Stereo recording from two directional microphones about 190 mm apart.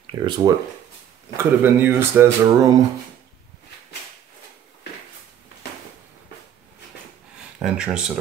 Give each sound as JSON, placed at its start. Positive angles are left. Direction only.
{"t": 0.0, "sound": "speech", "side_deg": -25}
{"t": 1.3, "sound": "speech", "side_deg": -10}
{"t": 7.3, "sound": "a sound", "side_deg": -5}